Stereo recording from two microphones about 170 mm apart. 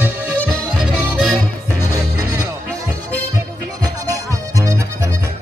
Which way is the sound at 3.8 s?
20° right (ahead or behind).